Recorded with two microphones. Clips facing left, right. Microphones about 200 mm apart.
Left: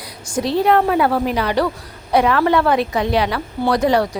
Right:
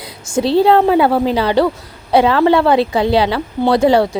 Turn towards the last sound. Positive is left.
turn(degrees=-30)  # may be behind; listen again after turning